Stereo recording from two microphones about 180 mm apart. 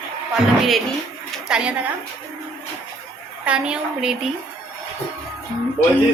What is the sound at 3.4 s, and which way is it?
Speech, 5° right (ahead or behind).